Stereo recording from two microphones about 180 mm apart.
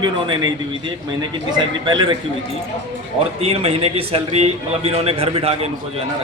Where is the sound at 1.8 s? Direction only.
25° right (ahead or behind).